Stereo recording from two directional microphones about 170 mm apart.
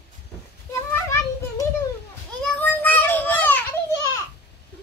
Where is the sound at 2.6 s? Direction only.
10° left (ahead or behind).